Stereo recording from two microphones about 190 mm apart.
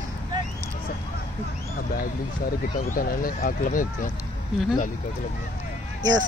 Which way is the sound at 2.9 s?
50° left (ahead or behind).